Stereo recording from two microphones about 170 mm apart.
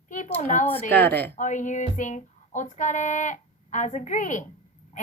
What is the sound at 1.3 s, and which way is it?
A woman's voice, 45° left (ahead or behind).